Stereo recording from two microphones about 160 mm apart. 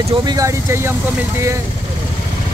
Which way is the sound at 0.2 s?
25° right (ahead or behind).